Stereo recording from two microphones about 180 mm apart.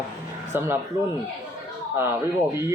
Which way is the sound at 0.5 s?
10° right (ahead or behind).